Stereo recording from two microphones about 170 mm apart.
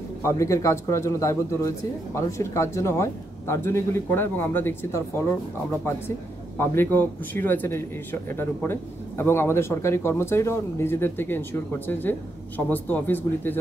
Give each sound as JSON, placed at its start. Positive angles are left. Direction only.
{"t": 0.2, "sound": "speech", "side_deg": 15}